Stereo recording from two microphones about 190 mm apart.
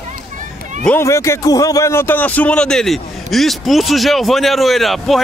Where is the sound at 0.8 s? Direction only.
15° left (ahead or behind).